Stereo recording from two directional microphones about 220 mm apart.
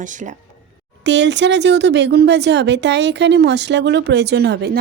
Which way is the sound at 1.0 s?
55° right (ahead or behind).